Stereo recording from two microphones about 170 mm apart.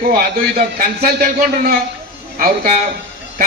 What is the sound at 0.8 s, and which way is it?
Speech, 55° right (ahead or behind).